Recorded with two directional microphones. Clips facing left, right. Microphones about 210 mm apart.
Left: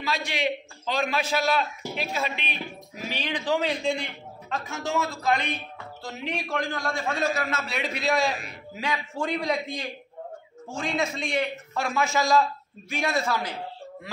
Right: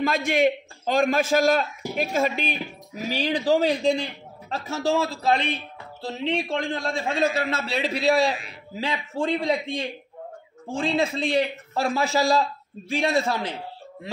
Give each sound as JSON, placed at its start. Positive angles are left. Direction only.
{"t": 0.0, "sound": "a man's voice", "side_deg": -50}
{"t": 11.0, "sound": "a man's voice", "side_deg": -35}